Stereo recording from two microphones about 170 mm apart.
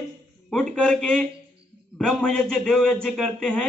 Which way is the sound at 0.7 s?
5° left (ahead or behind).